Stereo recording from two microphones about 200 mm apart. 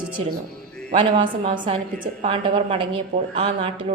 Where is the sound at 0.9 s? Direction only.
25° right (ahead or behind).